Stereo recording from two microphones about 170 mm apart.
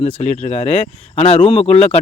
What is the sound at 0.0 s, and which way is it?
Speech, 40° left (ahead or behind).